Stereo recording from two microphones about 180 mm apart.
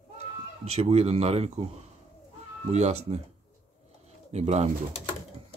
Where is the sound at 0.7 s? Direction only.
35° right (ahead or behind).